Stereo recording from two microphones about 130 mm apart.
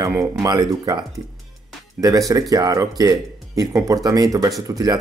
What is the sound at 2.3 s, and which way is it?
Speech, 25° right (ahead or behind).